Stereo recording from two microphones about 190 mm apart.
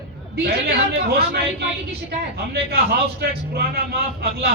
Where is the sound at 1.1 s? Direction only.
55° right (ahead or behind).